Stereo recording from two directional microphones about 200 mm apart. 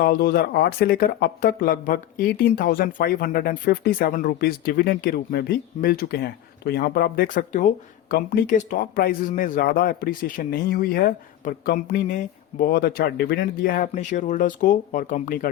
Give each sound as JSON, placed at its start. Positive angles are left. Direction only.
{"t": 0.0, "sound": "speech", "side_deg": 45}